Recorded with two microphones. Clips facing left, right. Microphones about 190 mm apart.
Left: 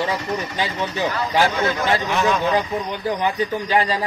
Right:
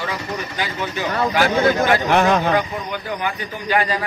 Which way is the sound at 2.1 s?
60° right (ahead or behind).